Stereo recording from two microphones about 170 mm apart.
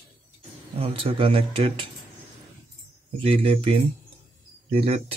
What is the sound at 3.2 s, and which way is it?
A man's voice, 30° right (ahead or behind).